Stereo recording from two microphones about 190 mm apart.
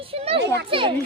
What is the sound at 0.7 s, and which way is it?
Speech, 25° right (ahead or behind).